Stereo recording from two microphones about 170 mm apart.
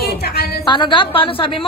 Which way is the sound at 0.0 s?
70° left (ahead or behind).